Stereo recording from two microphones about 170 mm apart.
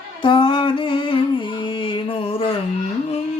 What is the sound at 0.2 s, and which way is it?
Music, 30° left (ahead or behind).